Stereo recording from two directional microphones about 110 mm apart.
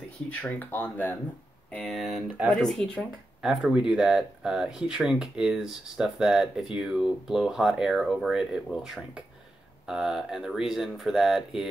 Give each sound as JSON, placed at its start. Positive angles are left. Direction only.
{"t": 0.3, "sound": "speech", "side_deg": 15}
{"t": 1.7, "sound": "speech", "side_deg": 5}
{"t": 2.2, "sound": "speech", "side_deg": -15}
{"t": 2.5, "sound": "speech", "side_deg": 5}